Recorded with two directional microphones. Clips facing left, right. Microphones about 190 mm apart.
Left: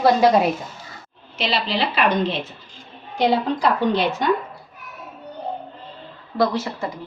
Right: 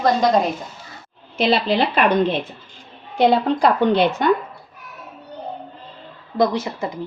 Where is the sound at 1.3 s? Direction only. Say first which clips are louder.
Right 6 dB; 50° right (ahead or behind).